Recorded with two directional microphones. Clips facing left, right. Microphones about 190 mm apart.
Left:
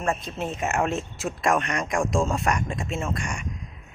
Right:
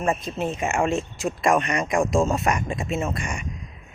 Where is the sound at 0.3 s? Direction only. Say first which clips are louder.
Right 2 dB; centre (ahead or behind).